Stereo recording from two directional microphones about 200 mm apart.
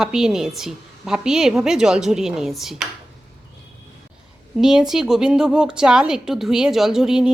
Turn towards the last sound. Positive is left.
turn(degrees=-5)  # may be behind; listen again after turning